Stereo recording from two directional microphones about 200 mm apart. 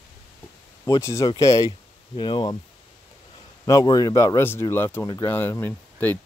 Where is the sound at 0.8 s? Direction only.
15° left (ahead or behind).